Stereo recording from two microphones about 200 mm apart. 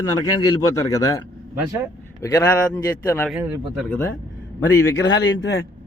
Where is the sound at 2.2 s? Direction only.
15° left (ahead or behind).